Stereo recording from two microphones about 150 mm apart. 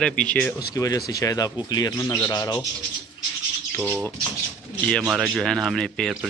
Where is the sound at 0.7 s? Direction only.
25° left (ahead or behind).